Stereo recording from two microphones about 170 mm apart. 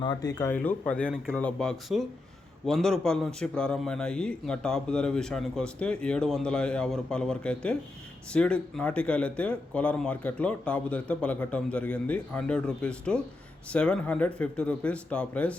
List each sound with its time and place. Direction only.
0.0 s speech: 25° left (ahead or behind)
0.5 s a man's voice: 10° left (ahead or behind)